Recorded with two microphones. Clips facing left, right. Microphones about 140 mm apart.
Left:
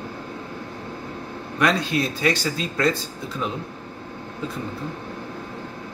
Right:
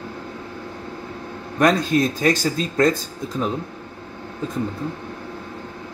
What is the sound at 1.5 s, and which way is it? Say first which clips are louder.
Speech: right 4 dB; 45° right (ahead or behind).